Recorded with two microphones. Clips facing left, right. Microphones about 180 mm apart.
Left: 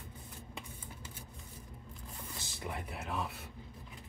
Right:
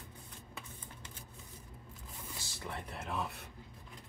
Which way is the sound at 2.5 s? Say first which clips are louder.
Left 2 dB; 15° left (ahead or behind).